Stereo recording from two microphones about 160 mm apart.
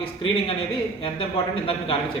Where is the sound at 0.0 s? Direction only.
35° left (ahead or behind).